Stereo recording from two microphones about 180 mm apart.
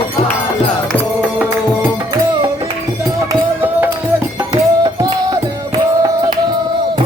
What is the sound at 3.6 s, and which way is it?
Music, 10° right (ahead or behind).